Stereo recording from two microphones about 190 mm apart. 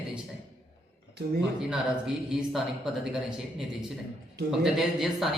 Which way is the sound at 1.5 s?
5° right (ahead or behind).